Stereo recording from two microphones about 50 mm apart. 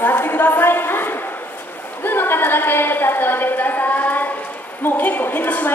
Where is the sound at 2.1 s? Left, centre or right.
Left.